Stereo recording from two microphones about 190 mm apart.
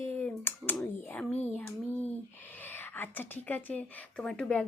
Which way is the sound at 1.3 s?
35° left (ahead or behind).